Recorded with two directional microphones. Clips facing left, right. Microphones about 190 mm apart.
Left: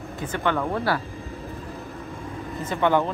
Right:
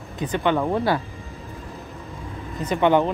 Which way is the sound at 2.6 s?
20° right (ahead or behind).